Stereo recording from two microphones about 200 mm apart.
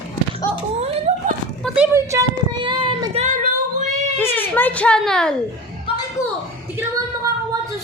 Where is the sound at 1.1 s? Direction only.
30° right (ahead or behind).